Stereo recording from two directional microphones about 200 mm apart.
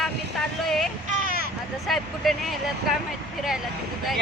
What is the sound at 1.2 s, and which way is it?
Vehicle, 45° right (ahead or behind).